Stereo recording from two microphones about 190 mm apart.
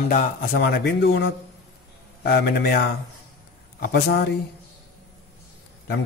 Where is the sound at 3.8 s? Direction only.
55° left (ahead or behind).